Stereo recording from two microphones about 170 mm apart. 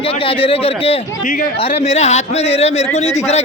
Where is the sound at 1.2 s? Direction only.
55° left (ahead or behind).